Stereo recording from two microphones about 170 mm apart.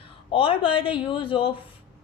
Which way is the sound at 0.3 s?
30° left (ahead or behind).